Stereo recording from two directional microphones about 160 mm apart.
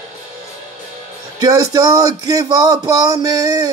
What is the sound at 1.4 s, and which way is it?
Speech, 25° right (ahead or behind).